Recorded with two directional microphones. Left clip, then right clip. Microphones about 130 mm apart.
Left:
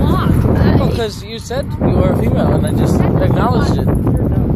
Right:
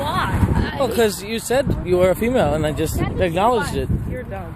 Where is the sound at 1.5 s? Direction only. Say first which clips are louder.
Left 1 dB; 50° right (ahead or behind).